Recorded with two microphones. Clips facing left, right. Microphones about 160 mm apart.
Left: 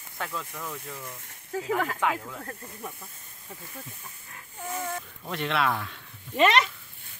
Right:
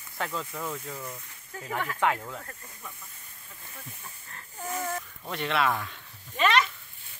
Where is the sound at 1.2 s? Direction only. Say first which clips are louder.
Left 9 dB; 90° left.